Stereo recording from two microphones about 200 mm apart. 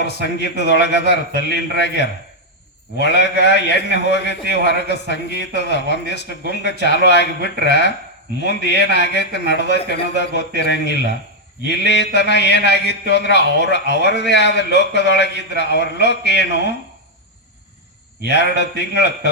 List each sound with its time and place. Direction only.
0.0 s a man's voice: 60° left (ahead or behind)
18.2 s a man's voice: 60° left (ahead or behind)